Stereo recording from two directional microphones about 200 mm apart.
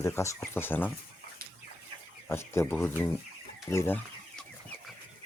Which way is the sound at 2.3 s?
10° left (ahead or behind).